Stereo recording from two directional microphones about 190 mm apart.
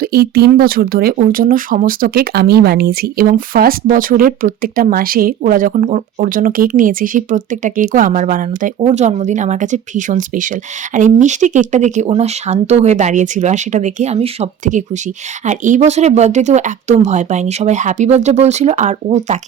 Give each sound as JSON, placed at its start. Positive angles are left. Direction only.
{"t": 0.0, "sound": "speech", "side_deg": -55}